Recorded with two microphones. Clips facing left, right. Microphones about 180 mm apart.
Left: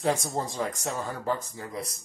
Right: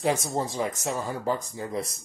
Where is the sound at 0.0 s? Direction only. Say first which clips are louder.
Right 1 dB; 5° right (ahead or behind).